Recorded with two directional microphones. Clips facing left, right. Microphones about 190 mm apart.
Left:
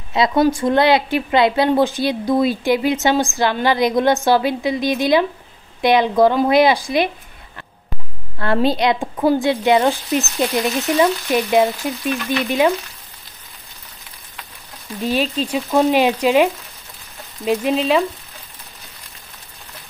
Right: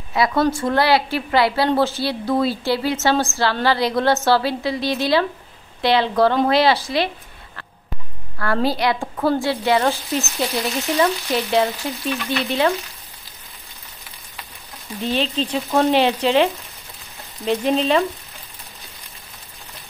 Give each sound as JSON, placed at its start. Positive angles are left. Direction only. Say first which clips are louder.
{"t": 0.1, "sound": "a woman's voice", "louder": "left 3 dB", "side_deg": 20}
{"t": 8.4, "sound": "a woman's voice", "louder": "left 3 dB", "side_deg": 20}
{"t": 15.0, "sound": "a woman's voice", "louder": "left 2 dB", "side_deg": 10}
{"t": 17.5, "sound": "a woman's voice", "louder": "left 1 dB", "side_deg": 5}